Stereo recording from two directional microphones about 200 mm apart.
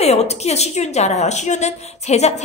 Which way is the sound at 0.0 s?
30° left (ahead or behind).